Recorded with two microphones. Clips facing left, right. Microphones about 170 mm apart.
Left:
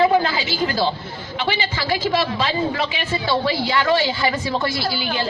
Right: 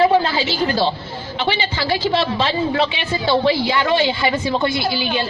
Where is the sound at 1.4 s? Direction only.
30° right (ahead or behind).